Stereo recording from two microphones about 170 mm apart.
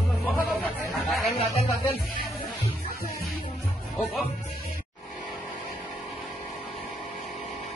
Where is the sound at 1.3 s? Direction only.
35° left (ahead or behind).